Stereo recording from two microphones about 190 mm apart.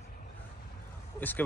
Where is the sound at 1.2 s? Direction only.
10° left (ahead or behind).